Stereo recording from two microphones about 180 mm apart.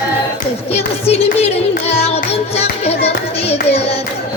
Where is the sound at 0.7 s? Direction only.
35° left (ahead or behind).